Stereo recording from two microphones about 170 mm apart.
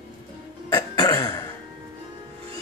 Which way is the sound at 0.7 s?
20° left (ahead or behind).